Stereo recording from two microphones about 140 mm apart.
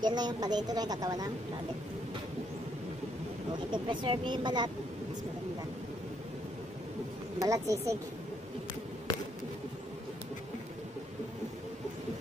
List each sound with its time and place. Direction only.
0.0 s a woman's voice: 30° right (ahead or behind)
3.7 s speech: 35° right (ahead or behind)
7.4 s a woman's voice: 25° right (ahead or behind)